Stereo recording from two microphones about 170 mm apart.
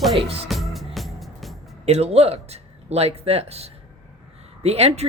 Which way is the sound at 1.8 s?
40° right (ahead or behind).